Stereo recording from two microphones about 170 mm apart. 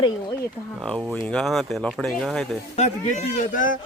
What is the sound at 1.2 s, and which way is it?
Speech, 5° left (ahead or behind).